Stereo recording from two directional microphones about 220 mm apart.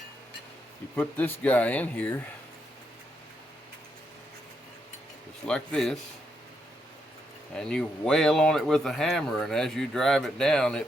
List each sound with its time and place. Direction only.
0.9 s speech: 5° left (ahead or behind)
5.5 s speech: 5° left (ahead or behind)
7.5 s speech: 5° left (ahead or behind)